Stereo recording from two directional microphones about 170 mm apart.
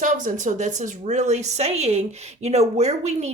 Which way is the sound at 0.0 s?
50° right (ahead or behind).